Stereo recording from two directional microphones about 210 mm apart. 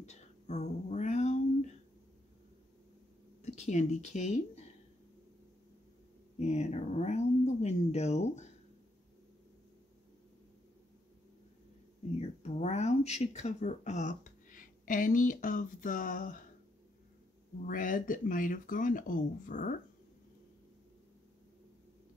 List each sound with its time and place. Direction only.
0.0 s a sound: 30° left (ahead or behind)
3.5 s speech: 35° left (ahead or behind)
6.3 s speech: 35° left (ahead or behind)
12.2 s speech: 30° left (ahead or behind)
17.6 s speech: 40° left (ahead or behind)